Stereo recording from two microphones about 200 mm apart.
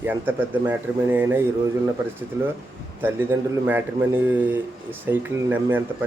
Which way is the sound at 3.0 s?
10° right (ahead or behind).